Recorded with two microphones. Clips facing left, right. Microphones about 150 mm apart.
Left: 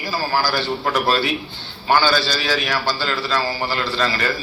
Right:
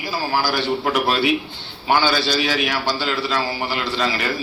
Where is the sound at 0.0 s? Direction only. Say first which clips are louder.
Left 1 dB; 20° right (ahead or behind).